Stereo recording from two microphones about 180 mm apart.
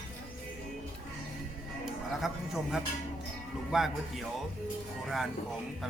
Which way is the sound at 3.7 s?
Centre (ahead or behind).